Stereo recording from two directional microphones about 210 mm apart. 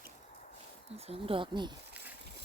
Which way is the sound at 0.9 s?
25° right (ahead or behind).